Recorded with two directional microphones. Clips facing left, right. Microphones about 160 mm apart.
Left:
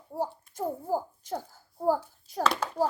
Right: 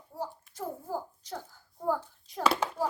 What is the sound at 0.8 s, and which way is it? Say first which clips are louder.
A child's voice: left 6 dB; 40° left (ahead or behind).